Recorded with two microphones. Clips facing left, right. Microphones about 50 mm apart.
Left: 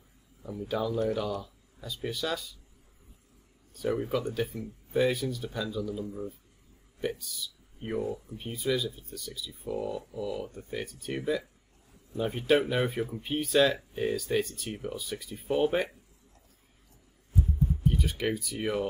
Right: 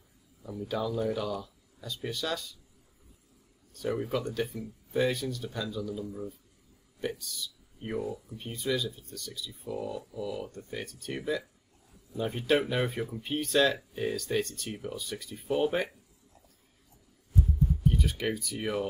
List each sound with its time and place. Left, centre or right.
0.4 s speech: centre
3.7 s speech: centre
17.6 s speech: centre